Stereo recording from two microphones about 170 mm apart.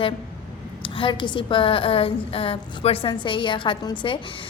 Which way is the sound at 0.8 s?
30° left (ahead or behind).